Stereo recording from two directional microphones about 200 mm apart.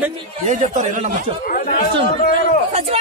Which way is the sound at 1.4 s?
45° left (ahead or behind).